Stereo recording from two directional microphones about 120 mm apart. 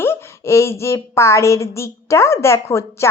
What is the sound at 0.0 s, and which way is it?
A woman's voice, 20° left (ahead or behind).